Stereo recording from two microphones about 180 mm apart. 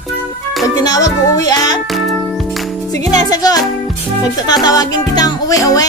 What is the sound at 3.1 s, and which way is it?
Music, 20° left (ahead or behind).